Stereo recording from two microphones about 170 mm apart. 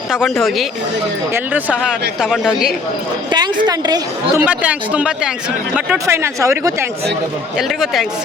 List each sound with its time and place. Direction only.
0.1 s speech: centre (ahead or behind)
3.3 s a woman's voice: 25° right (ahead or behind)
4.4 s speech: 10° right (ahead or behind)